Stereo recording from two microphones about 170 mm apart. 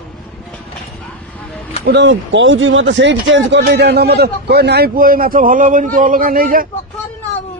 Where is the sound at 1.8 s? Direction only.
90° right; by 6.7 s 55° right (ahead or behind).